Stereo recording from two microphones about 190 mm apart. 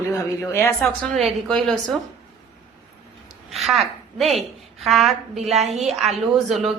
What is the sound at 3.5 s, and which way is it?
A woman's voice, centre (ahead or behind).